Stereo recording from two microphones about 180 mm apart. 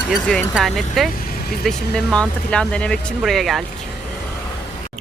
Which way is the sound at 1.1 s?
55° left (ahead or behind).